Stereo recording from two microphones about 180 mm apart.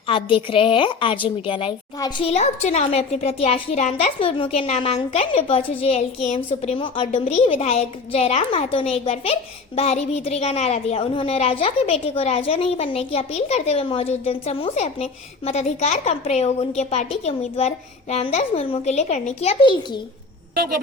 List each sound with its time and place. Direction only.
0.1 s a woman's voice: 30° left (ahead or behind)